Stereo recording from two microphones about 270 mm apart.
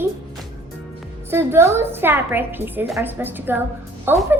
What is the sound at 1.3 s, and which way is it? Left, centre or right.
A woman's voice, centre.